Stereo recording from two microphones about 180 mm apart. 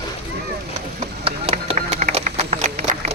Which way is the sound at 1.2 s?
35° right (ahead or behind).